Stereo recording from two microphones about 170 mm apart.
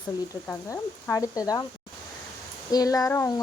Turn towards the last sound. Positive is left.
turn(degrees=15)  # may be behind; listen again after turning